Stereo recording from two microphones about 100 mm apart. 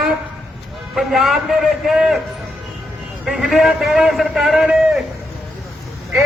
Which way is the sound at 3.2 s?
5° right (ahead or behind).